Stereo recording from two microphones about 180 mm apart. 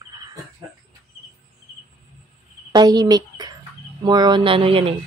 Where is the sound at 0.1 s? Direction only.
20° right (ahead or behind).